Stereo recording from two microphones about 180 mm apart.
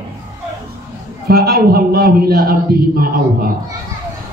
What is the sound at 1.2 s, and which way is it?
A man's voice, 60° right (ahead or behind).